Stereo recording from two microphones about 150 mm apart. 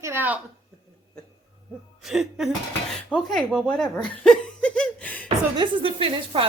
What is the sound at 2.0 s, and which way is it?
Speech, centre (ahead or behind).